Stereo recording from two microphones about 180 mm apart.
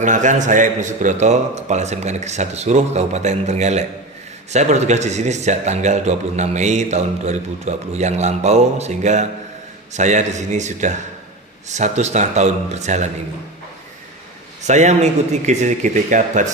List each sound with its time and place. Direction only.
0.0 s a man's voice: 45° right (ahead or behind)
14.7 s a man's voice: 40° right (ahead or behind)